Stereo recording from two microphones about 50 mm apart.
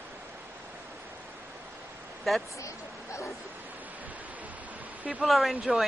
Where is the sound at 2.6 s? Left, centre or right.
Left.